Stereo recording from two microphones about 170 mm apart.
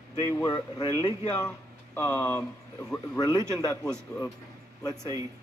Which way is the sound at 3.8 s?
5° left (ahead or behind).